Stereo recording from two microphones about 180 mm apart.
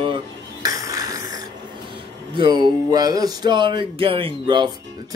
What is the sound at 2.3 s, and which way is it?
Music, 25° right (ahead or behind).